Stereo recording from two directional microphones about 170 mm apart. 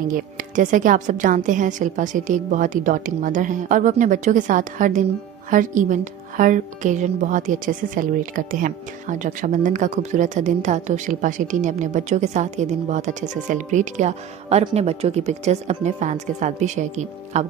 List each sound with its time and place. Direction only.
0.1 s speech: 50° right (ahead or behind)